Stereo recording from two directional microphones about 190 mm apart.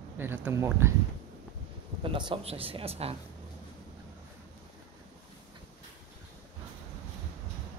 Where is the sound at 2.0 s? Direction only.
25° right (ahead or behind).